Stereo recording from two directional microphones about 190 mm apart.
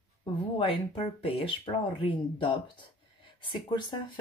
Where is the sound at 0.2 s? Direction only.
30° left (ahead or behind).